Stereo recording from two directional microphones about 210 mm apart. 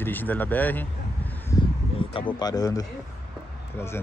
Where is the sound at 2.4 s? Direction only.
20° left (ahead or behind).